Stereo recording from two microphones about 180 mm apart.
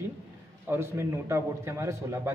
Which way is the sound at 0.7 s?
15° right (ahead or behind).